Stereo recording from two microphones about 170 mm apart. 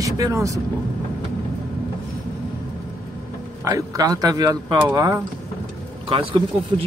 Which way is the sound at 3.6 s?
20° right (ahead or behind).